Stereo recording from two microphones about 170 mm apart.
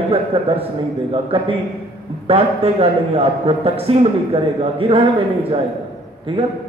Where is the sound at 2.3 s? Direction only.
35° right (ahead or behind).